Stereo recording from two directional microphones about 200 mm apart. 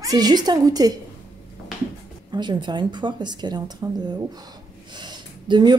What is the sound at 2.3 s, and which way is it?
Speech, 20° right (ahead or behind).